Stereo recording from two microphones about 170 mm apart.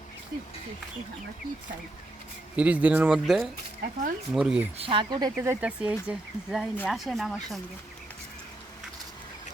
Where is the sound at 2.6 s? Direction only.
10° right (ahead or behind).